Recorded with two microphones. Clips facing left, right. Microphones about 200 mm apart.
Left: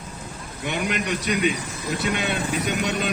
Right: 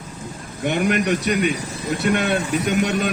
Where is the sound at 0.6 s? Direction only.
50° right (ahead or behind).